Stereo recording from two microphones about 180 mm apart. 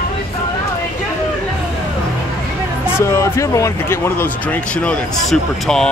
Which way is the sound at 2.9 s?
15° left (ahead or behind).